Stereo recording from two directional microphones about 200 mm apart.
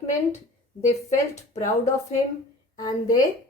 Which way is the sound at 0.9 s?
35° left (ahead or behind).